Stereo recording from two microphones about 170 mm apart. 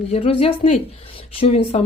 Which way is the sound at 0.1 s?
35° left (ahead or behind).